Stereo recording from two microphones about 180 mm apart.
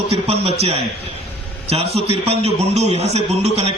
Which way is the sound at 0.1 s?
35° right (ahead or behind).